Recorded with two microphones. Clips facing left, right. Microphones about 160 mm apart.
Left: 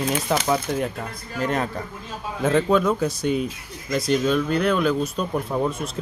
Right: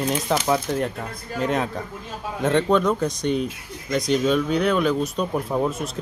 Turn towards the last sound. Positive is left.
turn(degrees=-5)  # may be behind; listen again after turning